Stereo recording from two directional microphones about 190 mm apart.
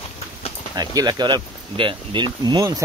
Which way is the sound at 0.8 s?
20° right (ahead or behind).